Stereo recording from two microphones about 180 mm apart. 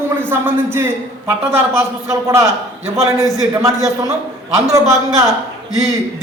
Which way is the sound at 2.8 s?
15° right (ahead or behind).